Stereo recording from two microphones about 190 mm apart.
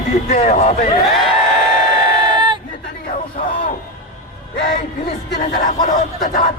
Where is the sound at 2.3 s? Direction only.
25° right (ahead or behind).